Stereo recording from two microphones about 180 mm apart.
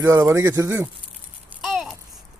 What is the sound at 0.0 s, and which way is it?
Speech, 15° right (ahead or behind).